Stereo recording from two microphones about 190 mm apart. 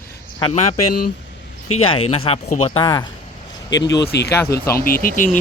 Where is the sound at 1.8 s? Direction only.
30° left (ahead or behind).